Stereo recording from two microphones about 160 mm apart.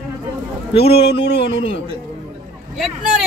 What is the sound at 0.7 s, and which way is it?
Speech, 35° left (ahead or behind).